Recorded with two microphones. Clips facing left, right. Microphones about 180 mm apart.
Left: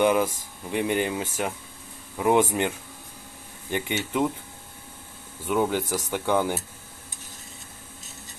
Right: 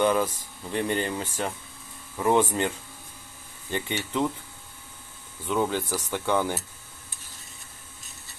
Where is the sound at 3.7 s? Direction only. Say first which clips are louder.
Left 2 dB; 15° left (ahead or behind).